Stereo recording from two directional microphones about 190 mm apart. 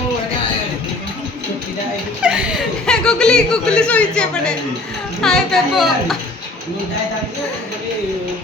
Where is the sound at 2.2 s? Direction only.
5° right (ahead or behind).